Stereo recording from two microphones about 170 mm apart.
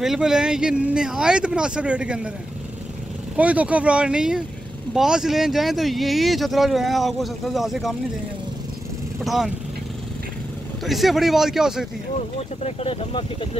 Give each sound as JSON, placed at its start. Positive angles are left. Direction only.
{"t": 0.0, "sound": "speech", "side_deg": 0}
{"t": 3.3, "sound": "speech", "side_deg": -10}
{"t": 9.2, "sound": "speech", "side_deg": 0}
{"t": 10.9, "sound": "speech", "side_deg": 0}
{"t": 12.4, "sound": "speech", "side_deg": 35}